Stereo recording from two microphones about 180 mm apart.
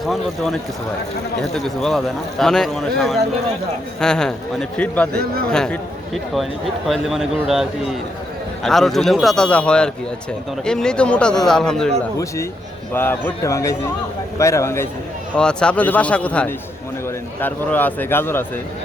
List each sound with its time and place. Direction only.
0.0 s a man's voice: centre (ahead or behind)
5.1 s speech: 55° right (ahead or behind)
5.5 s a man's voice: 5° left (ahead or behind)
12.9 s a man's voice: 10° left (ahead or behind)
15.4 s a man's voice: 5° left (ahead or behind)